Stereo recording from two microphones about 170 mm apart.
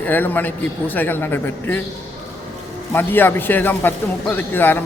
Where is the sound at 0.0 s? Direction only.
10° left (ahead or behind).